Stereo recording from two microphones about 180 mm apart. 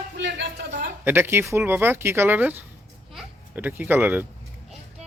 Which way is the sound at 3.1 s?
5° right (ahead or behind).